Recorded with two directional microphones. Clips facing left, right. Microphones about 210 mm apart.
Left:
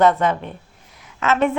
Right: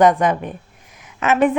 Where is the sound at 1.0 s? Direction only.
15° right (ahead or behind).